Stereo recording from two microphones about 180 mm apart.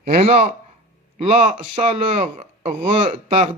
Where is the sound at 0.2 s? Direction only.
35° right (ahead or behind).